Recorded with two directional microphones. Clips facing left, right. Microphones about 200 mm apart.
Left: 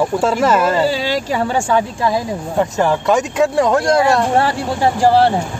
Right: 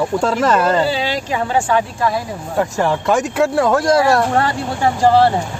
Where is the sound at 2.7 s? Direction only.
Centre (ahead or behind).